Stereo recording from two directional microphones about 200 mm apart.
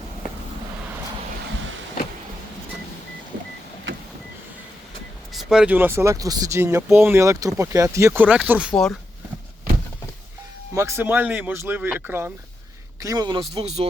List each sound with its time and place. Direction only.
5.3 s speech: centre (ahead or behind)
10.8 s a man's voice: 10° right (ahead or behind)
13.5 s speech: 30° right (ahead or behind)